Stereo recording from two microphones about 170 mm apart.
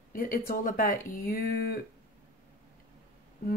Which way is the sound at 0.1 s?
55° left (ahead or behind).